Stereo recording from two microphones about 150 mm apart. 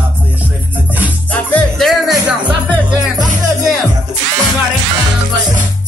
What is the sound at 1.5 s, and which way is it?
Music, centre (ahead or behind).